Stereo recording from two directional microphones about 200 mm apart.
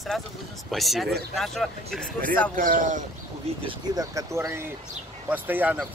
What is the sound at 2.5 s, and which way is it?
Speech, 45° right (ahead or behind).